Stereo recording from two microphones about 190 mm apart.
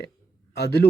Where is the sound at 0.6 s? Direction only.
60° left (ahead or behind).